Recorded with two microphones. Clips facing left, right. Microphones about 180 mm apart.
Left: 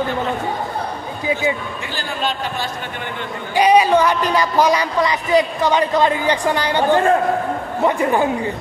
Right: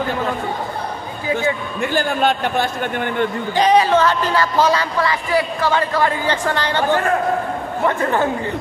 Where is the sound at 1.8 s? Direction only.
55° right (ahead or behind).